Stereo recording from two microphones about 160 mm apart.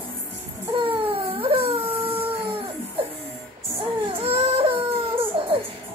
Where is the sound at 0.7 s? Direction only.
35° right (ahead or behind).